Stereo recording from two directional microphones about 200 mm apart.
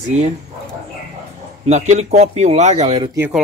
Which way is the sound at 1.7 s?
35° right (ahead or behind).